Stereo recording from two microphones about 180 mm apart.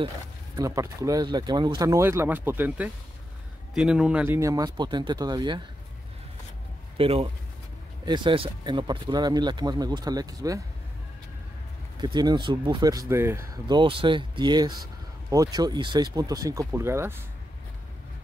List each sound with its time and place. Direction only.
0.6 s speech: 15° right (ahead or behind)
7.0 s speech: 35° right (ahead or behind)
12.0 s speech: 25° right (ahead or behind)